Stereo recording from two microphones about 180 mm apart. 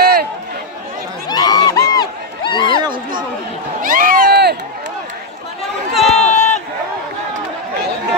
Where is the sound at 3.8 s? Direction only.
50° right (ahead or behind).